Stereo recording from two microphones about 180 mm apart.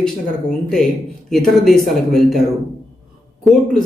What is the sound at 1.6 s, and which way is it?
Speech, centre (ahead or behind).